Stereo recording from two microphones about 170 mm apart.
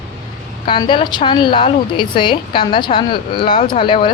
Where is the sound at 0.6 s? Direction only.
30° left (ahead or behind).